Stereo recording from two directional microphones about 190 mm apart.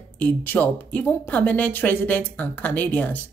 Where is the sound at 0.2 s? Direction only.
10° left (ahead or behind).